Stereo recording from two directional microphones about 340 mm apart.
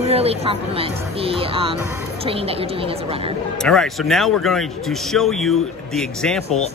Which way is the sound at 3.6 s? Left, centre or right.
Centre.